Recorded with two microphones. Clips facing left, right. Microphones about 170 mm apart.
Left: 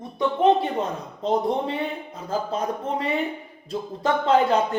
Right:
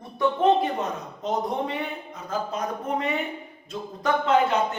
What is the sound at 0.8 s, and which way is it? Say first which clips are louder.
A man's voice: left 3 dB; 30° left (ahead or behind).